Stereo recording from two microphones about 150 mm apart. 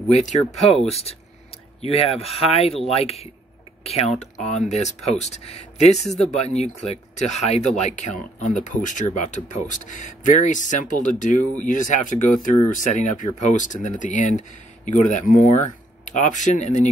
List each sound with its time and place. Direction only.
0.1 s speech: 45° left (ahead or behind)
6.0 s speech: 5° left (ahead or behind)
6.3 s speech: 45° left (ahead or behind)